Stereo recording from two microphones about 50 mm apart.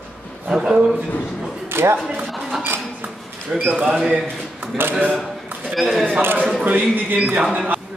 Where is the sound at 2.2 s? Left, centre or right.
Centre.